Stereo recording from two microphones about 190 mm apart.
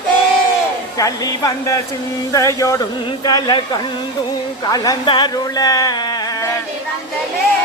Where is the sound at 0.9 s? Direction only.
20° left (ahead or behind).